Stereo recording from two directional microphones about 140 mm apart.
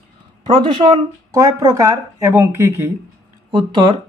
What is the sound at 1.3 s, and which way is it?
Speech, 25° right (ahead or behind).